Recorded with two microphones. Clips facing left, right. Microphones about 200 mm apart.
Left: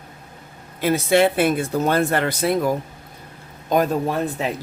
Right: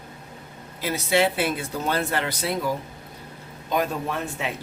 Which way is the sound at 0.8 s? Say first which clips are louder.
Left 6 dB; 55° left (ahead or behind).